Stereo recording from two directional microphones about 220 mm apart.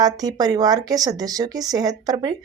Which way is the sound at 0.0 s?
15° right (ahead or behind).